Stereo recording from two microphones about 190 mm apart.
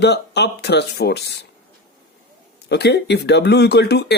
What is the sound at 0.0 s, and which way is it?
Speech, 60° left (ahead or behind).